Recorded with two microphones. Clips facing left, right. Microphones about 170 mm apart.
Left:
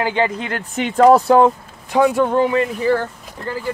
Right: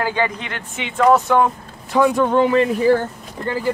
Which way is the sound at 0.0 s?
25° left (ahead or behind).